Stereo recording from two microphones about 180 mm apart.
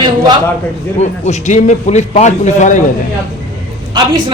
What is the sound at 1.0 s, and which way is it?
A man's voice, 40° left (ahead or behind).